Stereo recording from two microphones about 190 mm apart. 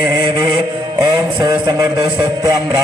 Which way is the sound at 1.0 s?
20° right (ahead or behind).